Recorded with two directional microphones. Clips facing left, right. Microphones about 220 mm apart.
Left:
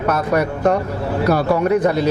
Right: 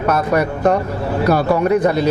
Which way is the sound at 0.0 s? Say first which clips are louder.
Right 1 dB; 25° right (ahead or behind).